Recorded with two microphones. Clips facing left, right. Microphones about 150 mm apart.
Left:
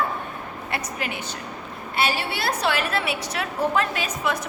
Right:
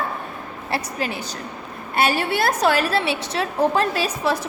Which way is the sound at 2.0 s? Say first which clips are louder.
Right 5 dB; 50° right (ahead or behind).